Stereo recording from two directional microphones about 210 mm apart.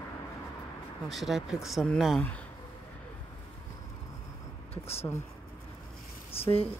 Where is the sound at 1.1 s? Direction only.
Centre (ahead or behind).